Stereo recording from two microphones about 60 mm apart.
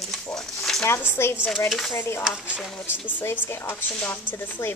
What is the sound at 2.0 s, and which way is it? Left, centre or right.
Speech, left.